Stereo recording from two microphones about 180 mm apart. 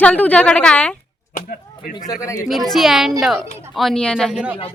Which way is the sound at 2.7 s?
Centre (ahead or behind).